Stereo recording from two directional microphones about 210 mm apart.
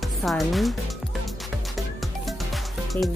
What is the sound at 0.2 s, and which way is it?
Speech, centre (ahead or behind).